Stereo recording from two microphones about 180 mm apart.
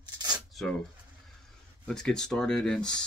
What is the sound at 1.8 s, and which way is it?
Speech, 5° left (ahead or behind).